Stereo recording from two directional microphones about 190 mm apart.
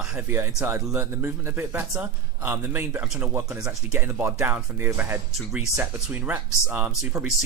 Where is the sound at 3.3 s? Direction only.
15° right (ahead or behind).